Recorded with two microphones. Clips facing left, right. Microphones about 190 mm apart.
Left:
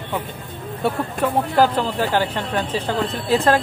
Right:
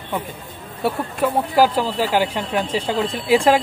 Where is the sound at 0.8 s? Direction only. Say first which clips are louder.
Right 1 dB; 5° right (ahead or behind).